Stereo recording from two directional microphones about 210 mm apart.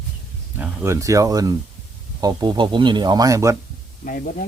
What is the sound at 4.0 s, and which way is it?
Speech, 40° left (ahead or behind).